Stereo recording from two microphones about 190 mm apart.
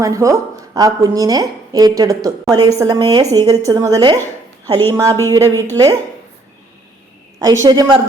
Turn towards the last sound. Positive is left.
turn(degrees=-20)  # may be behind; listen again after turning